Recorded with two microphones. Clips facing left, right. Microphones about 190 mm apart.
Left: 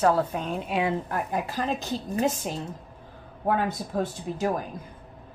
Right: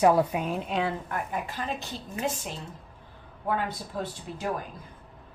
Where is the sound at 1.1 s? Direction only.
40° left (ahead or behind).